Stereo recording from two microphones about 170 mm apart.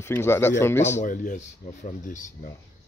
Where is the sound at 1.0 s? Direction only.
50° left (ahead or behind).